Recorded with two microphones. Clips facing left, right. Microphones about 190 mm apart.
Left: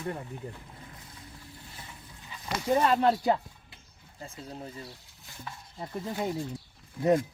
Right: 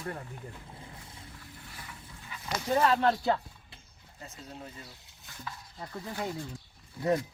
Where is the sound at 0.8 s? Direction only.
25° right (ahead or behind).